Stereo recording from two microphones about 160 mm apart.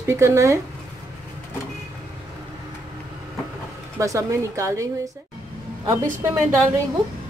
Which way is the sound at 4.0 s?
20° right (ahead or behind).